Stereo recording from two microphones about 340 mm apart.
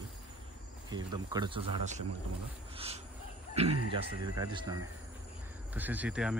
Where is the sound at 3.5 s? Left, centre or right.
Centre.